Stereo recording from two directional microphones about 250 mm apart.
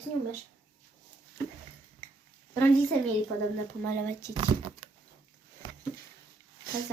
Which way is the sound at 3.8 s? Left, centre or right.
Centre.